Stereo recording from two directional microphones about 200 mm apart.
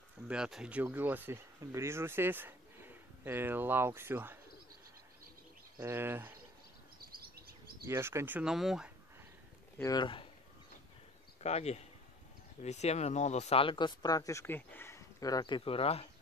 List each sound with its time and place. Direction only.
0.3 s speech: 5° right (ahead or behind)
5.8 s speech: 10° right (ahead or behind)
7.0 s bird: 50° right (ahead or behind)
7.8 s speech: 15° right (ahead or behind)
9.8 s speech: 20° left (ahead or behind)
11.4 s speech: 35° left (ahead or behind)